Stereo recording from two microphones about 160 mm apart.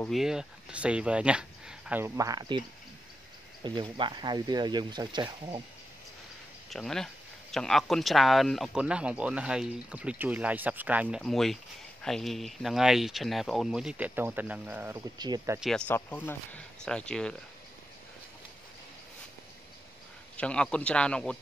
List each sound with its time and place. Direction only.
0.1 s speech: 5° right (ahead or behind); by 2.6 s 20° right (ahead or behind)
3.6 s speech: 30° right (ahead or behind)
6.7 s speech: centre (ahead or behind)
15.1 s speech: 25° right (ahead or behind)
15.9 s speech: 15° left (ahead or behind)
20.3 s a man's voice: 5° left (ahead or behind)